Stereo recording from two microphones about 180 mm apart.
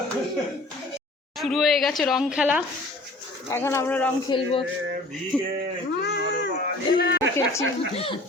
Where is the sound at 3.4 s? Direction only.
15° left (ahead or behind).